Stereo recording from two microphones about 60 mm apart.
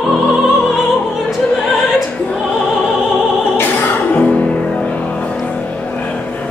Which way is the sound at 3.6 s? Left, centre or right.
Left.